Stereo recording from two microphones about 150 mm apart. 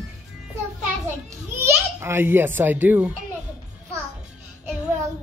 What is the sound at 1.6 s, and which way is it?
A child's voice, 15° right (ahead or behind).